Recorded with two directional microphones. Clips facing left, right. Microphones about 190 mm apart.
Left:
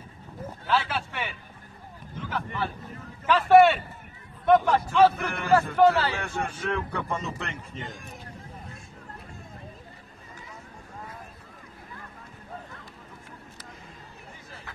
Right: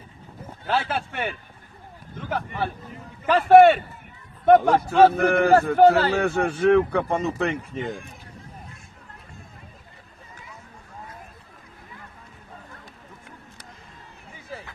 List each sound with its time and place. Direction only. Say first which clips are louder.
0.7 s speech: right 2 dB; 50° right (ahead or behind)
2.2 s a sound: right 4 dB; 55° right (ahead or behind)
3.3 s a man's voice: right 4 dB; 55° right (ahead or behind)